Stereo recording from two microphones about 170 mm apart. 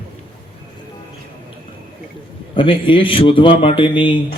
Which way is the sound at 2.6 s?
30° left (ahead or behind).